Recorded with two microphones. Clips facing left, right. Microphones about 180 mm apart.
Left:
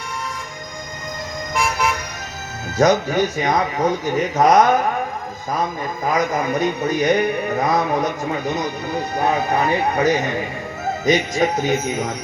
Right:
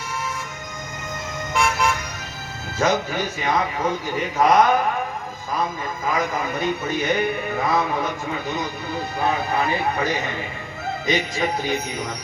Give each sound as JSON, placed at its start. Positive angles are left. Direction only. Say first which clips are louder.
{"t": 2.7, "sound": "a man's voice", "louder": "left 6 dB", "side_deg": 40}
{"t": 6.1, "sound": "a man's voice", "louder": "left 4 dB", "side_deg": 40}